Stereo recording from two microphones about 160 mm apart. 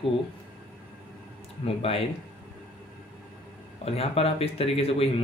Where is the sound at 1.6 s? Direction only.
35° left (ahead or behind).